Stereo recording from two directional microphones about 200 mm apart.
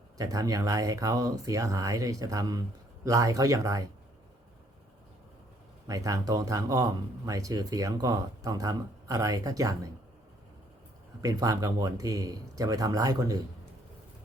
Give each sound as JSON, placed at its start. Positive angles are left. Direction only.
{"t": 0.2, "sound": "speech", "side_deg": -15}
{"t": 5.9, "sound": "speech", "side_deg": -15}
{"t": 11.2, "sound": "speech", "side_deg": -15}